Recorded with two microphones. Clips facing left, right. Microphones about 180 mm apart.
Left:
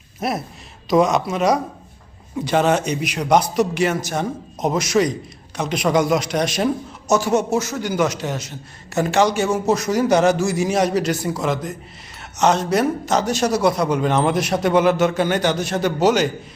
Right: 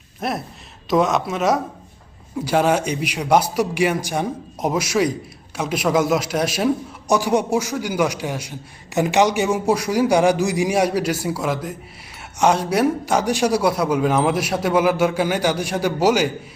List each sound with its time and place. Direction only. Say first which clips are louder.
0.2 s a woman's voice: left 1 dB; centre (ahead or behind)